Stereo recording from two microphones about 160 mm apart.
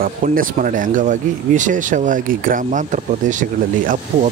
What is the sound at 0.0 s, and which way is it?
Speech, 60° right (ahead or behind).